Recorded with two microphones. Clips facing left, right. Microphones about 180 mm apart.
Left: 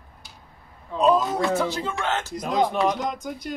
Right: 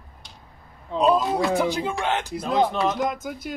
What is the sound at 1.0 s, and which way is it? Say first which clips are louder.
Speech: even; 10° right (ahead or behind).